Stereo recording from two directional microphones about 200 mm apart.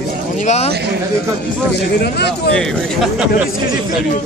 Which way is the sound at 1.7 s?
55° left (ahead or behind).